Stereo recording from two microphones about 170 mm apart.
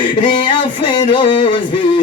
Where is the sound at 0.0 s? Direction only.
30° left (ahead or behind).